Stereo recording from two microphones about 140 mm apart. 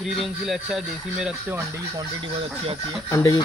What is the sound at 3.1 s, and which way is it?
Speech, 20° left (ahead or behind).